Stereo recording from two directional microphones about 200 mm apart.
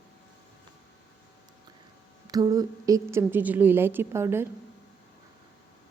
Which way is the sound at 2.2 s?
20° right (ahead or behind).